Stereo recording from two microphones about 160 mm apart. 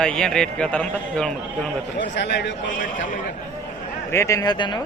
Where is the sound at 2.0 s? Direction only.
90° left.